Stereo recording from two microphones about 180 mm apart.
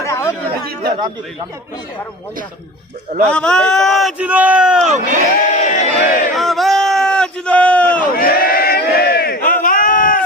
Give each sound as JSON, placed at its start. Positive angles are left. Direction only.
{"t": 0.0, "sound": "chatter", "side_deg": 15}
{"t": 3.2, "sound": "a man's voice", "side_deg": 5}
{"t": 4.8, "sound": "speech", "side_deg": -45}
{"t": 5.5, "sound": "crowd", "side_deg": 40}
{"t": 6.3, "sound": "a sound", "side_deg": 0}
{"t": 8.0, "sound": "crowd", "side_deg": 55}